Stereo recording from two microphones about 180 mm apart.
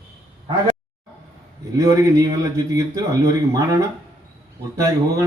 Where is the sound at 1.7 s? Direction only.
15° right (ahead or behind).